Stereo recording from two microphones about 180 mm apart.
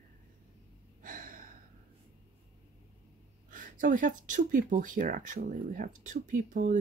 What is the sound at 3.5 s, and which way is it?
Speech, 45° right (ahead or behind).